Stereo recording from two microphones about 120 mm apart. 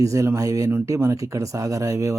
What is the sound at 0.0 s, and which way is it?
Speech, 25° right (ahead or behind).